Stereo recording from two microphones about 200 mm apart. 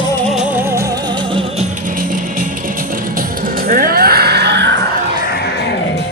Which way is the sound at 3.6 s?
45° right (ahead or behind).